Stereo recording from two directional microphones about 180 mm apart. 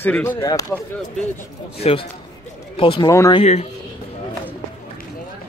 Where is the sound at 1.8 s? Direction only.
30° left (ahead or behind).